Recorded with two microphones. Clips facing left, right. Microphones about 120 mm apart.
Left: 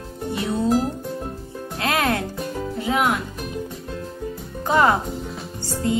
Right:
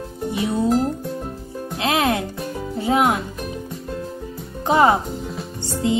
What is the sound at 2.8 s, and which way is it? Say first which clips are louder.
Music: right 4 dB; 40° right (ahead or behind).